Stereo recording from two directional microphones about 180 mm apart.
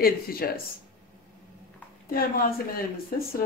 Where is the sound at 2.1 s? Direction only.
55° left (ahead or behind).